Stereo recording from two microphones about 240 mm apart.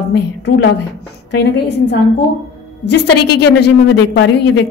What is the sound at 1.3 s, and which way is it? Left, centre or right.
A woman's voice, left.